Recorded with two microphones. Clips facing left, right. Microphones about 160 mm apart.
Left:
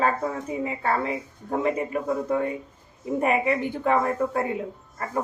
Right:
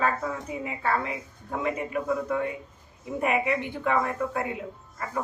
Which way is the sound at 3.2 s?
35° left (ahead or behind).